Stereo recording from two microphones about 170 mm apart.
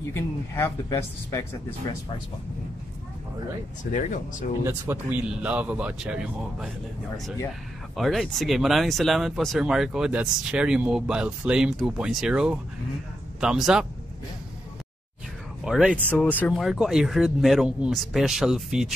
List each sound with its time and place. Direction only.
0.1 s speech: 15° left (ahead or behind)
3.9 s speech: 50° left (ahead or behind)
4.9 s speech: 15° right (ahead or behind)
7.9 s speech: centre (ahead or behind)
15.6 s speech: 5° right (ahead or behind)
16.1 s speech: 10° left (ahead or behind)